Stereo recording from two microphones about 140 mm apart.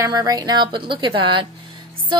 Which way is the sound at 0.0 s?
25° right (ahead or behind).